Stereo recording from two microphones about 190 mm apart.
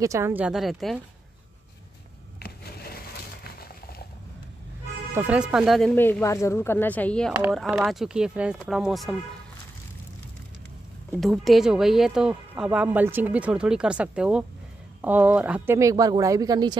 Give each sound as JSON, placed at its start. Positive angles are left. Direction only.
{"t": 0.0, "sound": "speech", "side_deg": -15}
{"t": 5.1, "sound": "speech", "side_deg": -10}
{"t": 5.9, "sound": "speech", "side_deg": 10}
{"t": 11.1, "sound": "speech", "side_deg": 0}